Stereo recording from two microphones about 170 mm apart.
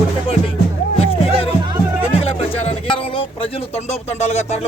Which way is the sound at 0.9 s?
35° left (ahead or behind).